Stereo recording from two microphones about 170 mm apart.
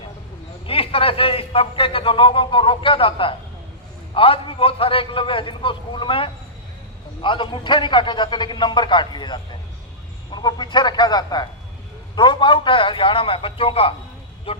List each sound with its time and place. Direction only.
0.7 s a man's voice: 35° left (ahead or behind)